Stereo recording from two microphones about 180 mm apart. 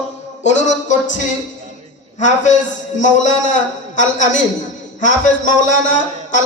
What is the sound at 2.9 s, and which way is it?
A man's voice, 45° left (ahead or behind).